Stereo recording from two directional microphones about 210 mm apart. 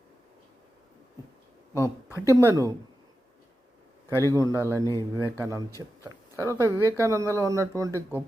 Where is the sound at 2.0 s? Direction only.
15° left (ahead or behind).